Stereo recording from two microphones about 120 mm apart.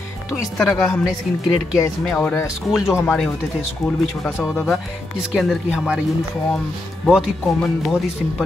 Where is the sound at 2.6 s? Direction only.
Centre (ahead or behind).